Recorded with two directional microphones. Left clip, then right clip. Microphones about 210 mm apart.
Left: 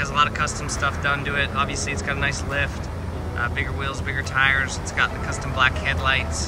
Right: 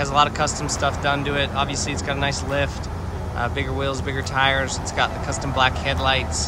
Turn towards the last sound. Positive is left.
turn(degrees=-20)  # may be behind; listen again after turning